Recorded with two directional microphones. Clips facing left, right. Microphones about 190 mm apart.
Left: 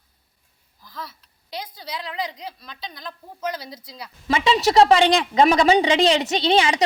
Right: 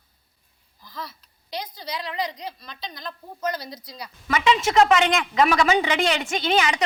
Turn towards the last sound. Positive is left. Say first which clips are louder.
# left 3 dB
turn(degrees=30)  # may be behind; listen again after turning